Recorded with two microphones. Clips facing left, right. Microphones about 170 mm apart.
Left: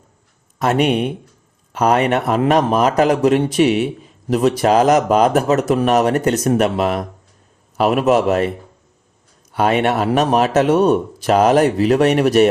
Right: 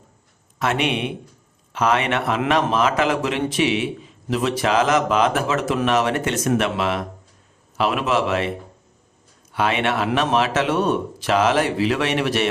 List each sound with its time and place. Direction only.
0.6 s a man's voice: 40° left (ahead or behind)